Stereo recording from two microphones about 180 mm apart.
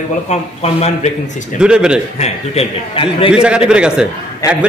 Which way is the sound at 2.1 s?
35° left (ahead or behind).